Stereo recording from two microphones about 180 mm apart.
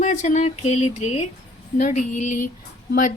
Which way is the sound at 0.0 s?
40° left (ahead or behind).